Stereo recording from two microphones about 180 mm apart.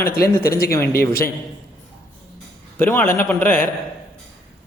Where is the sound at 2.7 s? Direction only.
10° left (ahead or behind).